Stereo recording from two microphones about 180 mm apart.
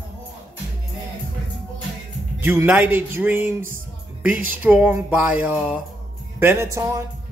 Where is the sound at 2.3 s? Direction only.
10° right (ahead or behind).